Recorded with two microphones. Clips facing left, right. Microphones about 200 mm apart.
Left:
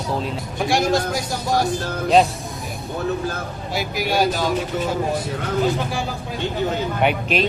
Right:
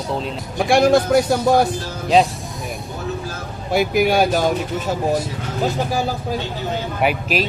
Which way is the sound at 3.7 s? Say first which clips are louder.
Right 7 dB; 55° right (ahead or behind).